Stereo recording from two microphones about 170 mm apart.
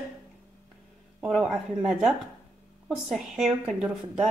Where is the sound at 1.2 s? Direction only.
5° right (ahead or behind).